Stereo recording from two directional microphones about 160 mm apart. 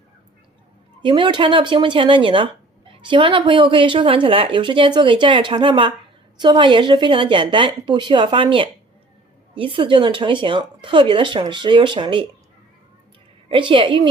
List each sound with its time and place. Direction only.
1.0 s speech: 30° right (ahead or behind)
13.5 s speech: 30° right (ahead or behind)